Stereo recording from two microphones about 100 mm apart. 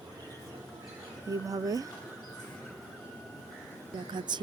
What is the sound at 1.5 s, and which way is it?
Speech, 35° right (ahead or behind).